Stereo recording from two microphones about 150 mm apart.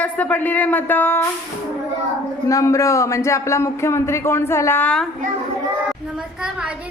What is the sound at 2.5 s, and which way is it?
Speech, 20° left (ahead or behind).